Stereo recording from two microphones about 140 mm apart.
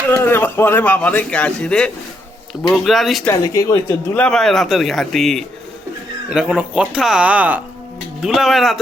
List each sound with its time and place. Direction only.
0.1 s a man's voice: 15° left (ahead or behind); by 3.2 s centre (ahead or behind)
3.4 s speech: 25° left (ahead or behind)
4.1 s speech: 5° left (ahead or behind)